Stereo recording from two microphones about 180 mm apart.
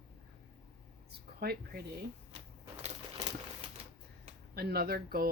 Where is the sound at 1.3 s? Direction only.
60° right (ahead or behind).